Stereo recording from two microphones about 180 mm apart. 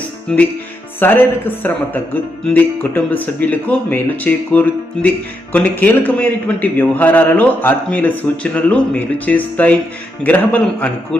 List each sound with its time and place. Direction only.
0.3 s music: 5° left (ahead or behind)
0.9 s speech: 10° left (ahead or behind)